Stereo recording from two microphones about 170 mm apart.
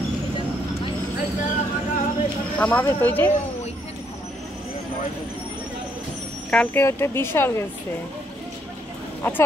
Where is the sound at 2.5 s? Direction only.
5° left (ahead or behind).